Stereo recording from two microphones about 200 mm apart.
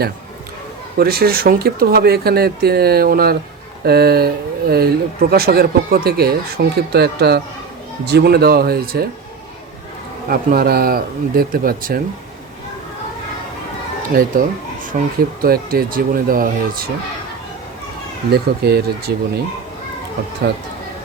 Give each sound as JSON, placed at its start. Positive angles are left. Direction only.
{"t": 0.9, "sound": "speech", "side_deg": -50}
{"t": 10.2, "sound": "speech", "side_deg": -45}
{"t": 14.1, "sound": "speech", "side_deg": -45}
{"t": 18.3, "sound": "speech", "side_deg": -55}